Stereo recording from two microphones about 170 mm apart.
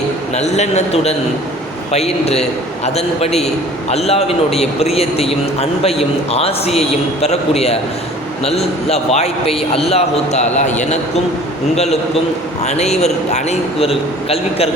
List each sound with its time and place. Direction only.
0.3 s a man's voice: 40° left (ahead or behind)
12.6 s a man's voice: 40° left (ahead or behind)